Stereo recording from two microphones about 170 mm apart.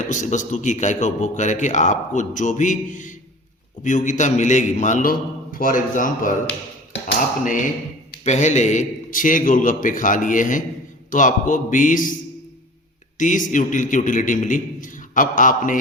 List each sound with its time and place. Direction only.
0.0 s a man's voice: 45° left (ahead or behind)
8.2 s a man's voice: 45° left (ahead or behind)
13.1 s a man's voice: 50° left (ahead or behind)